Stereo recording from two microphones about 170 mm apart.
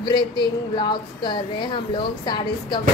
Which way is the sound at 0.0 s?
25° left (ahead or behind).